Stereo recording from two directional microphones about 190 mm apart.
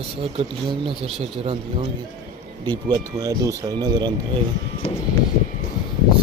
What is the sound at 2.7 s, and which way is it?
Speech, 20° right (ahead or behind).